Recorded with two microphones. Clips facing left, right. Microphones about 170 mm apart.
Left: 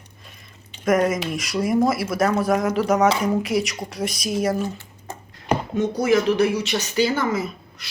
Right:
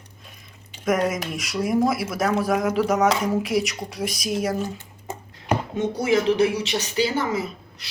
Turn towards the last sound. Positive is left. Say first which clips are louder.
# left 1 dB
turn(degrees=-35)  # may be behind; listen again after turning